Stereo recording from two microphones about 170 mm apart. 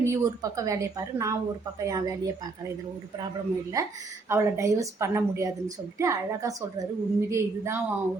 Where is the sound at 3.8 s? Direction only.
20° right (ahead or behind).